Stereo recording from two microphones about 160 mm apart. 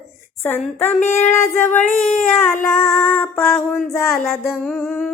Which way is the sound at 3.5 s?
Centre (ahead or behind).